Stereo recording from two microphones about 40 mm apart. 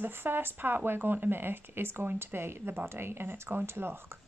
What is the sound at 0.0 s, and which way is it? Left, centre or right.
Speech, right.